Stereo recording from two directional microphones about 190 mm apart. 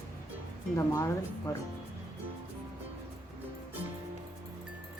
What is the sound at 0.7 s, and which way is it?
Speech, 15° left (ahead or behind).